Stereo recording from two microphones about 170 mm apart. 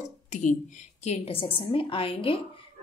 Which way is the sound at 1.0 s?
35° left (ahead or behind).